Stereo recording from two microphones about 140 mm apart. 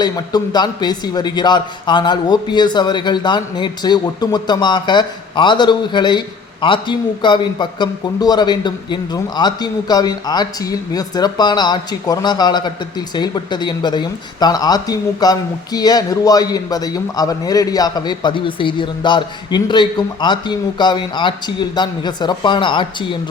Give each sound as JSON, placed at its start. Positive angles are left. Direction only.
{"t": 0.0, "sound": "a man's voice", "side_deg": 30}